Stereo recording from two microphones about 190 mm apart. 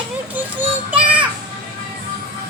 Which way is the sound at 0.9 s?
5° right (ahead or behind).